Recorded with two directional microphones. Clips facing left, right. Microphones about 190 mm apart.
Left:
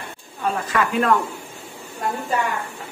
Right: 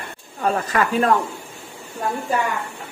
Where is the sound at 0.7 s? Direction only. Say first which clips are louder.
Even; 35° right (ahead or behind).